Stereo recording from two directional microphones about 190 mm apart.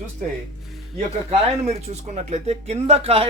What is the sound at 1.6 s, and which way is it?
Speech, 35° right (ahead or behind).